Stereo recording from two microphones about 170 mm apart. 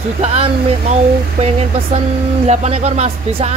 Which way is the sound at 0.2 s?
35° right (ahead or behind).